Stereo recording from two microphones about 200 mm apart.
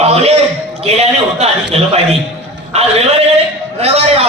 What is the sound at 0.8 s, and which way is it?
A man's voice, 30° right (ahead or behind).